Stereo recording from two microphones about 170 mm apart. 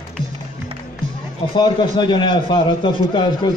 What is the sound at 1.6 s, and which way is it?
A man's voice, 30° left (ahead or behind).